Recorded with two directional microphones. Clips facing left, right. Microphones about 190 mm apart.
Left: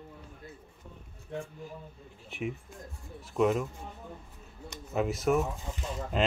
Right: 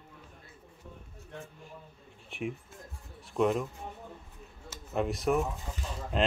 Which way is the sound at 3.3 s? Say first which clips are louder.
Left 1 dB; centre (ahead or behind).